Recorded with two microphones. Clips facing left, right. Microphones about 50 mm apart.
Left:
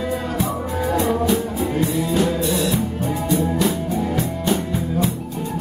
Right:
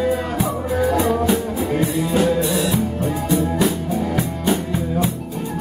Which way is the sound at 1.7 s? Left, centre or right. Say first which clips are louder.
Right 1 dB; centre.